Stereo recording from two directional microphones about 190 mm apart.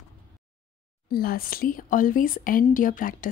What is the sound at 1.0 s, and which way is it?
Speech, 50° left (ahead or behind).